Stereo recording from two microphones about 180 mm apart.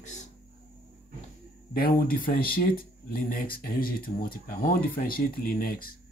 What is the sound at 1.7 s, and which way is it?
Speech, 55° left (ahead or behind).